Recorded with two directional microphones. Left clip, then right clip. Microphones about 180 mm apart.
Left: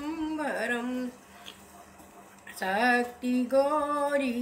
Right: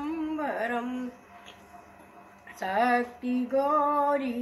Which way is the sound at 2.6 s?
20° left (ahead or behind).